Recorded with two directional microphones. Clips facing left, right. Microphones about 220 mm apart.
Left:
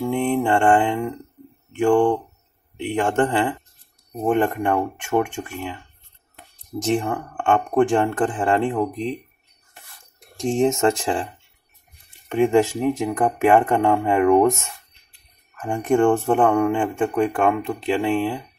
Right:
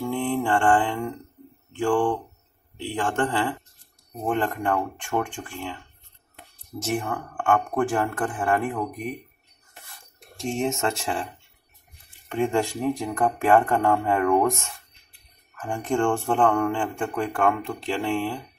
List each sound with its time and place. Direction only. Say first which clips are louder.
0.0 s mantra: left 4 dB; 20° left (ahead or behind)
1.7 s speech: left 5 dB; 20° left (ahead or behind)
6.8 s speech: left 6 dB; 25° left (ahead or behind)
10.4 s speech: left 7 dB; 30° left (ahead or behind)
12.3 s speech: left 7 dB; 20° left (ahead or behind)
15.5 s a sound: left 5 dB; 25° left (ahead or behind)
15.8 s speech: left 6 dB; 20° left (ahead or behind)